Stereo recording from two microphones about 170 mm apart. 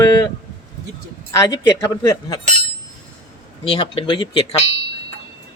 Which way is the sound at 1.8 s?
20° left (ahead or behind).